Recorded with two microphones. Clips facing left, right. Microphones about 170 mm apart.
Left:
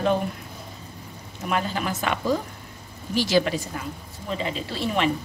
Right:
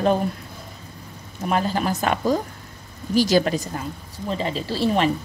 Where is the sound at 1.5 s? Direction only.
35° right (ahead or behind).